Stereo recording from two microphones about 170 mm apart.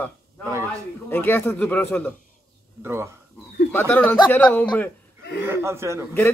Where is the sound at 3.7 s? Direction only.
10° left (ahead or behind).